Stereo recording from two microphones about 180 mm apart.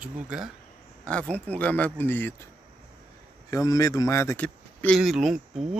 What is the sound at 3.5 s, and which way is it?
Speech, 20° left (ahead or behind).